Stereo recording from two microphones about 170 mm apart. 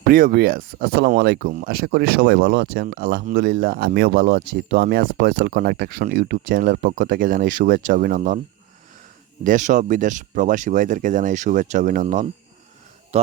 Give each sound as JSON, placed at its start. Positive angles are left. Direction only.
{"t": 0.1, "sound": "speech", "side_deg": -55}
{"t": 1.5, "sound": "speech", "side_deg": -60}
{"t": 2.8, "sound": "speech", "side_deg": -65}
{"t": 9.4, "sound": "speech", "side_deg": -50}
{"t": 12.0, "sound": "speech", "side_deg": -40}